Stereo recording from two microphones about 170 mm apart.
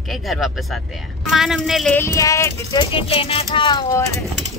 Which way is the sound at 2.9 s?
35° left (ahead or behind).